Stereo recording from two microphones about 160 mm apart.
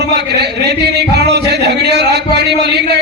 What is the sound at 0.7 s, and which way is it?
Speech, 90° right.